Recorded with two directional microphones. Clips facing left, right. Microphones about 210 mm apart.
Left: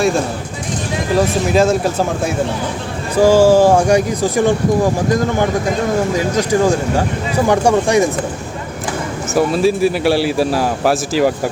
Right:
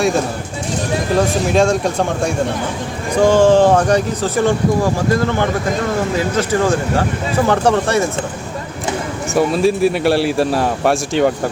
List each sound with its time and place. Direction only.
1.1 s a man's voice: centre (ahead or behind)
6.1 s speech: 15° left (ahead or behind)
9.3 s a man's voice: centre (ahead or behind)